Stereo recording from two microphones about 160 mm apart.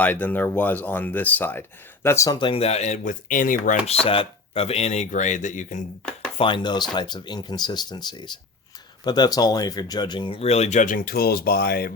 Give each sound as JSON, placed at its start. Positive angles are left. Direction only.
{"t": 0.0, "sound": "speech", "side_deg": 10}
{"t": 3.8, "sound": "speech", "side_deg": 40}
{"t": 6.3, "sound": "speech", "side_deg": 30}